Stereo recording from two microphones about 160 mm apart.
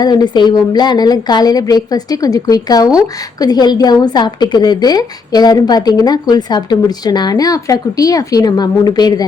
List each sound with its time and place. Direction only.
0.0 s a woman's voice: 25° left (ahead or behind)